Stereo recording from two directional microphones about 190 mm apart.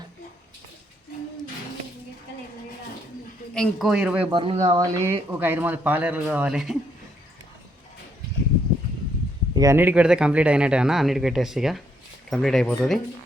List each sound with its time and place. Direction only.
3.5 s speech: centre (ahead or behind)
4.3 s speech: 25° right (ahead or behind); by 6.7 s 5° right (ahead or behind)
9.6 s speech: 15° right (ahead or behind); by 13.0 s centre (ahead or behind)